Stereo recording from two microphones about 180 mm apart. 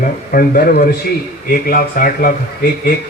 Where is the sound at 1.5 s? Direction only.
55° left (ahead or behind).